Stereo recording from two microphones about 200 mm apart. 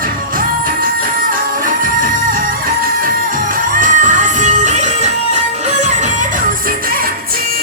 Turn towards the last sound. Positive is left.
turn(degrees=-35)  # may be behind; listen again after turning